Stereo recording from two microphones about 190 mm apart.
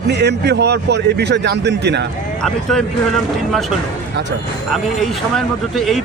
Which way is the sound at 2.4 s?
Centre (ahead or behind).